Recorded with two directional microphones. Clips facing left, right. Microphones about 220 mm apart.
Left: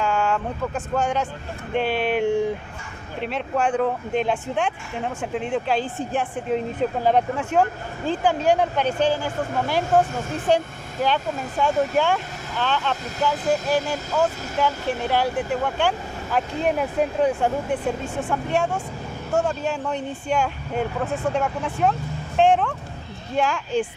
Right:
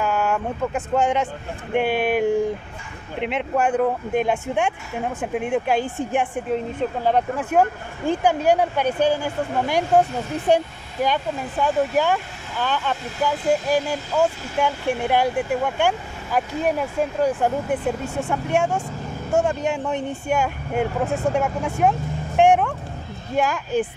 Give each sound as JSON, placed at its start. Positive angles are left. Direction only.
{"t": 0.0, "sound": "vehicle", "side_deg": -10}
{"t": 0.9, "sound": "speech", "side_deg": -15}
{"t": 6.5, "sound": "speech", "side_deg": 0}
{"t": 8.1, "sound": "speech", "side_deg": -10}